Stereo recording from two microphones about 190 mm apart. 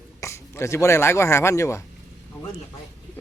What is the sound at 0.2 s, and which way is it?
Speech, 15° left (ahead or behind).